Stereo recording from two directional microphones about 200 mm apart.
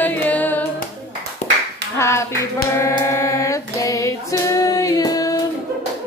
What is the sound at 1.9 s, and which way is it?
Clapping, 15° left (ahead or behind).